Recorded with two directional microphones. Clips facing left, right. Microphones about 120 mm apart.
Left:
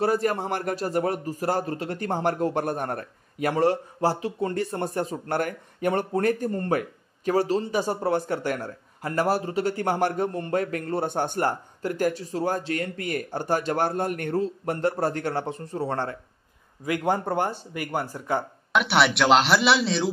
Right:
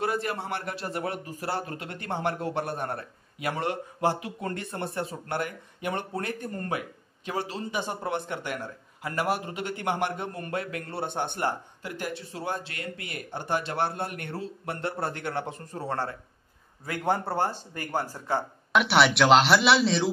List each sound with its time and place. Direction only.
0.0 s a man's voice: 40° left (ahead or behind)
16.8 s speech: 15° left (ahead or behind)
18.7 s speech: centre (ahead or behind)